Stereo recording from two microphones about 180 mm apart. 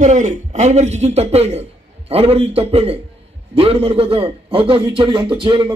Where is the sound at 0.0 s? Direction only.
45° right (ahead or behind).